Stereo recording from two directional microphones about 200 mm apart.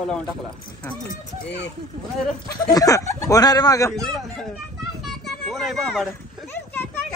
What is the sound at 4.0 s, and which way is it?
Speech, centre (ahead or behind).